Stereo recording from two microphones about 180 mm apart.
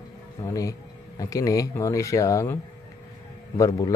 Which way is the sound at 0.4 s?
20° left (ahead or behind).